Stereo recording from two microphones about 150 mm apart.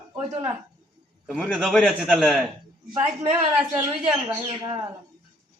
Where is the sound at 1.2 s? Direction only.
5° left (ahead or behind).